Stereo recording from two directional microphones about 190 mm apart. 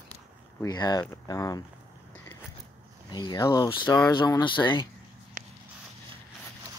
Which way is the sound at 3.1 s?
20° left (ahead or behind).